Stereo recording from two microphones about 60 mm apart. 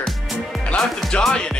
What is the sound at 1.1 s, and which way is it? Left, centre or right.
Music, centre.